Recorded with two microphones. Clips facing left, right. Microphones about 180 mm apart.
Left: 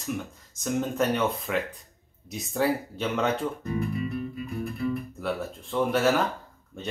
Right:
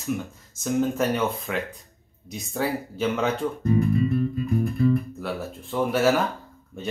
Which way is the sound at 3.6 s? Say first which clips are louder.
Right 8 dB; 35° right (ahead or behind).